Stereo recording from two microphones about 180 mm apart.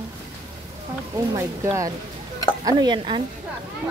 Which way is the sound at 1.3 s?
15° right (ahead or behind).